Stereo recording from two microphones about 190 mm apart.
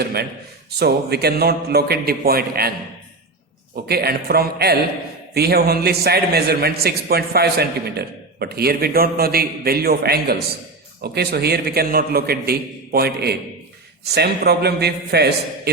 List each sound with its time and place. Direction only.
0.0 s a man's voice: 55° right (ahead or behind)
3.8 s a man's voice: 55° right (ahead or behind)